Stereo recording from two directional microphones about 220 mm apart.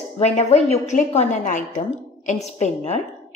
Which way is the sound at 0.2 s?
30° left (ahead or behind).